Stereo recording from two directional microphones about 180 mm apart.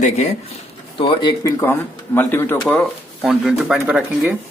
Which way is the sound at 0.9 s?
30° left (ahead or behind).